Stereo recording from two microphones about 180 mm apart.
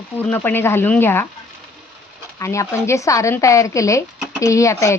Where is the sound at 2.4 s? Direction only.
15° left (ahead or behind).